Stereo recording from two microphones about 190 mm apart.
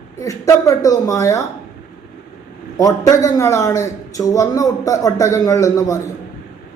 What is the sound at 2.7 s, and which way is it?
Speech, 20° left (ahead or behind).